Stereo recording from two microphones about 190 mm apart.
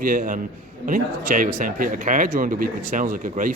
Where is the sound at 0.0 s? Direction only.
45° right (ahead or behind).